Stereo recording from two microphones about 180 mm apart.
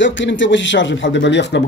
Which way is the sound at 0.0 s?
90° left.